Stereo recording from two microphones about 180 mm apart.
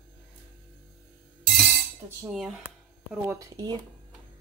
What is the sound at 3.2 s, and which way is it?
Speech, 20° right (ahead or behind).